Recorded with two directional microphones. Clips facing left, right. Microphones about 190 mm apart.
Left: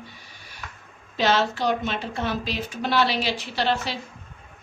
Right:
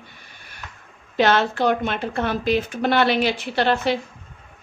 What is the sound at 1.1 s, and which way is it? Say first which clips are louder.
A woman's voice: right 3 dB; 60° right (ahead or behind).